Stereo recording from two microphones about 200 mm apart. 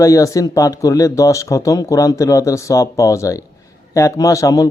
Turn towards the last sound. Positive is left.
turn(degrees=15)  # may be behind; listen again after turning